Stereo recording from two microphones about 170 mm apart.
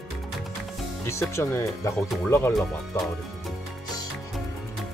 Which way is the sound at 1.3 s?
15° left (ahead or behind).